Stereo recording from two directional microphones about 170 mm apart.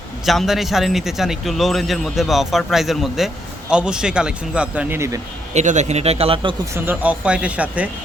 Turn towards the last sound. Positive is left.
turn(degrees=-10)  # may be behind; listen again after turning